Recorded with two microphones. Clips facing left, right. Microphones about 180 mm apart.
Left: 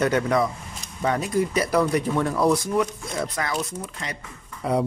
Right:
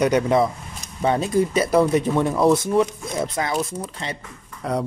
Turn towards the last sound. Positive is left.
turn(degrees=0)  # may be behind; listen again after turning